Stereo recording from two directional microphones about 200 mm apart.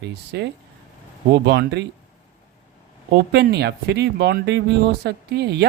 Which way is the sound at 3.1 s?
55° right (ahead or behind).